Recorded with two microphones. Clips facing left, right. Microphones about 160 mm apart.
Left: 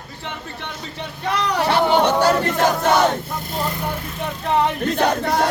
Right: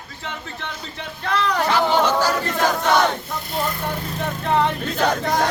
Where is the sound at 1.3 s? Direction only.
15° left (ahead or behind).